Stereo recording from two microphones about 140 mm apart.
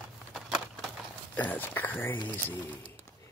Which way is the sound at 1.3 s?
10° left (ahead or behind).